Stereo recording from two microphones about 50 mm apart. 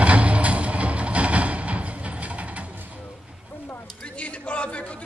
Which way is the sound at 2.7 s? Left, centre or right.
Right.